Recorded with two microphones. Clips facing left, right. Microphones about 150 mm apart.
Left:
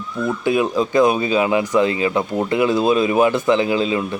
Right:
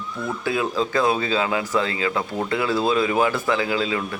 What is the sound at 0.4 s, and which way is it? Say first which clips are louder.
Speech: left 5 dB; 20° left (ahead or behind).